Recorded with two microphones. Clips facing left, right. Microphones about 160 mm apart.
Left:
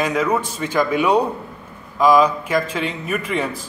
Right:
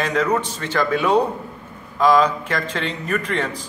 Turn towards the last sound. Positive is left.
turn(degrees=10)  # may be behind; listen again after turning